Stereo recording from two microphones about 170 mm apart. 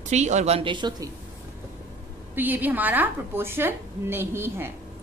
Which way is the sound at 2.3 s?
10° right (ahead or behind).